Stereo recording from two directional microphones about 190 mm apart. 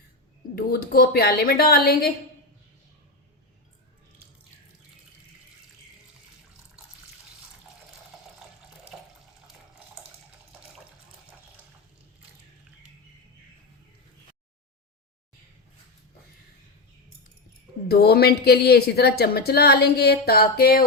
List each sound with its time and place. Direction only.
0.5 s a woman's voice: 50° left (ahead or behind)
8.1 s water: centre (ahead or behind)
8.9 s water tap: 5° right (ahead or behind)
17.8 s a woman's voice: 55° left (ahead or behind)